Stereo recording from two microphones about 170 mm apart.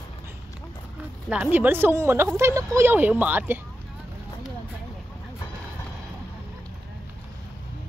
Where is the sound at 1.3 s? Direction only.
10° right (ahead or behind).